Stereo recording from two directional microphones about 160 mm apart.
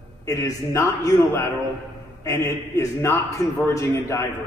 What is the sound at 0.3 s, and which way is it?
A man's voice, 20° left (ahead or behind).